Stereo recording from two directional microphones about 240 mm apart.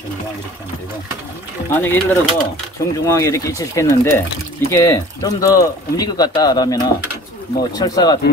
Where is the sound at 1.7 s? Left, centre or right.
Centre.